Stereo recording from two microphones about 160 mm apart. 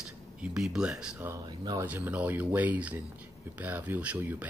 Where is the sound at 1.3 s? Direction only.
15° right (ahead or behind).